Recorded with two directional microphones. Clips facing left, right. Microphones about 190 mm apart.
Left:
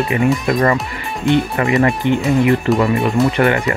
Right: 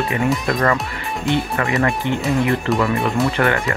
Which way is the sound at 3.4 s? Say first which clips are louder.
Left 4 dB; 15° left (ahead or behind).